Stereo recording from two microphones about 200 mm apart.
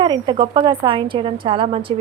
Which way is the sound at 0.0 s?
20° right (ahead or behind).